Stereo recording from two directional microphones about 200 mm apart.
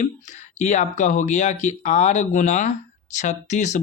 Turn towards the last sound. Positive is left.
turn(degrees=35)  # may be behind; listen again after turning